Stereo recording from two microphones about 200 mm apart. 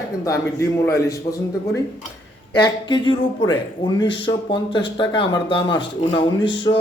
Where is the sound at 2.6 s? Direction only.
25° left (ahead or behind).